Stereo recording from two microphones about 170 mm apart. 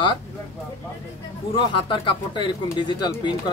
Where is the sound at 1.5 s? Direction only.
30° left (ahead or behind).